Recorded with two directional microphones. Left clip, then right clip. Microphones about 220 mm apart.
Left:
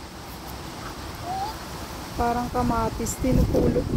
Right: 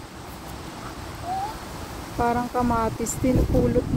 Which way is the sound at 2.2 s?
20° right (ahead or behind).